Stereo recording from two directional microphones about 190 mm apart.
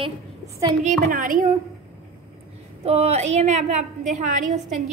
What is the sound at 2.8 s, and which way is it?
A woman's voice, 35° right (ahead or behind).